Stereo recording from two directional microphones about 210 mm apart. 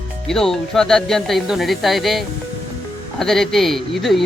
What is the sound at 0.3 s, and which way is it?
Speech, centre (ahead or behind).